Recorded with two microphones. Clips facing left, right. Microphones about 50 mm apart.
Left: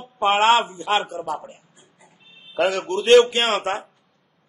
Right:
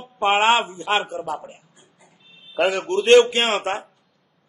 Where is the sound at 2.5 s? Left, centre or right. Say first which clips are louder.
Right 1 dB; centre.